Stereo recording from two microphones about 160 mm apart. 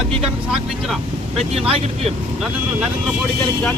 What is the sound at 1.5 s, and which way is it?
Speech, 40° right (ahead or behind).